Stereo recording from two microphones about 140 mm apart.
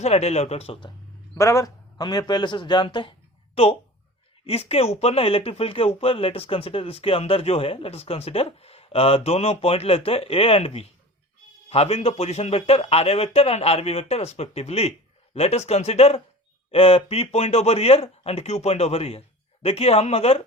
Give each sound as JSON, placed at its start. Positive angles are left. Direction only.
{"t": 0.0, "sound": "speech", "side_deg": 50}
{"t": 1.4, "sound": "speech", "side_deg": 20}